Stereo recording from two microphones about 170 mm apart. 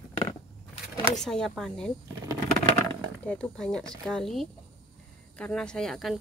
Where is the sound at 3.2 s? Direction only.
5° left (ahead or behind).